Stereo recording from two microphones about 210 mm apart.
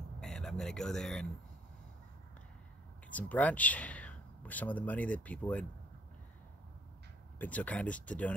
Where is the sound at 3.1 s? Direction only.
5° left (ahead or behind).